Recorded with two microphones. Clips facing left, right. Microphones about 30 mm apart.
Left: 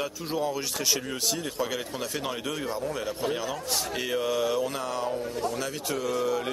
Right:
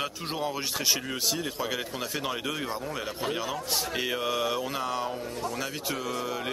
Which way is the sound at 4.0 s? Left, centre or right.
Centre.